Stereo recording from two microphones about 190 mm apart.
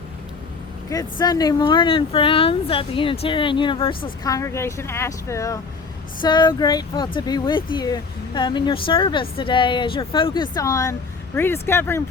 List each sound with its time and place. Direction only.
0.9 s speech: 20° left (ahead or behind)